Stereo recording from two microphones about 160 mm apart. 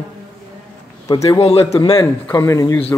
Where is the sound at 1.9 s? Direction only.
20° left (ahead or behind).